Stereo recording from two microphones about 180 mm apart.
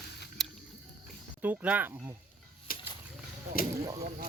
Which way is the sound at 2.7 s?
50° left (ahead or behind).